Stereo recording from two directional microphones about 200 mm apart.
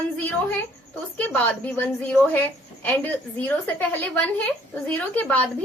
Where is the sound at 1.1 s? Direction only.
10° left (ahead or behind).